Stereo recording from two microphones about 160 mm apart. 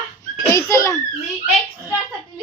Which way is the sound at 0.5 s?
20° left (ahead or behind).